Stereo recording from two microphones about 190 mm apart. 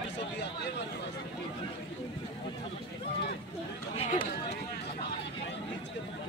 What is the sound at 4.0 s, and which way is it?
Run, 35° left (ahead or behind).